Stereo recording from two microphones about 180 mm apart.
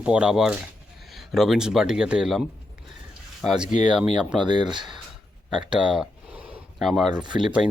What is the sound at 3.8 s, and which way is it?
Speech, 5° right (ahead or behind).